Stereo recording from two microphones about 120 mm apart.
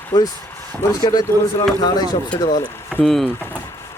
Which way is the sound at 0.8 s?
30° left (ahead or behind).